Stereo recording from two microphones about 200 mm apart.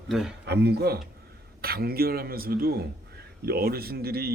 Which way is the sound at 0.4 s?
55° right (ahead or behind).